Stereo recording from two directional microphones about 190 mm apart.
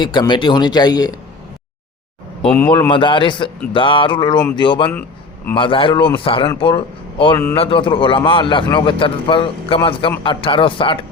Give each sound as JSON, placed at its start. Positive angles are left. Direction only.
{"t": 0.0, "sound": "a man's voice", "side_deg": 25}
{"t": 2.5, "sound": "speech", "side_deg": 10}
{"t": 2.9, "sound": "a man's voice", "side_deg": 25}